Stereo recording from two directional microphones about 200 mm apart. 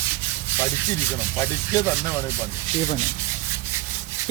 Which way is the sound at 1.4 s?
10° left (ahead or behind).